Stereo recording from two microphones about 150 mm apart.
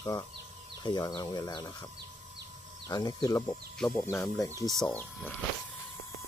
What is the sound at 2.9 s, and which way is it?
Speech, 25° left (ahead or behind).